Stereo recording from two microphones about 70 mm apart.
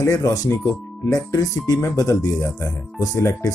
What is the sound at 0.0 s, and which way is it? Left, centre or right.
Speech, left.